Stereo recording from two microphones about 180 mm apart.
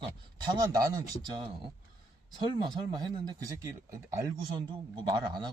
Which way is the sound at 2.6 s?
25° right (ahead or behind).